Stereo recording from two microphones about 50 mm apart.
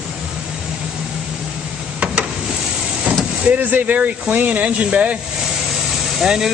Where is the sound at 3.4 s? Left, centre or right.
Right.